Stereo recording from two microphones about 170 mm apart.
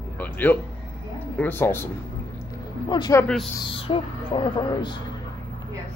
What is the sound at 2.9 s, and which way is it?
Speech, 25° left (ahead or behind).